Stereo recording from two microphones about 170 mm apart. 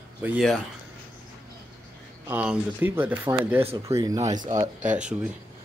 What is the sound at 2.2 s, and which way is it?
Speech, 10° right (ahead or behind).